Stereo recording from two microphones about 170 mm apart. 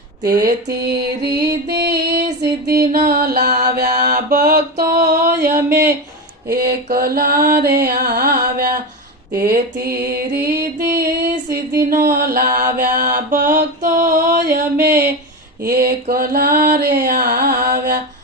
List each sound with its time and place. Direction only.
0.4 s music: 70° right (ahead or behind)
2.4 s mantra: 70° right (ahead or behind)
5.5 s speech: 15° right (ahead or behind)
5.7 s mantra: 65° right (ahead or behind)
10.4 s music: 65° right (ahead or behind)
11.5 s a sound: 55° right (ahead or behind)
15.6 s mantra: 60° right (ahead or behind)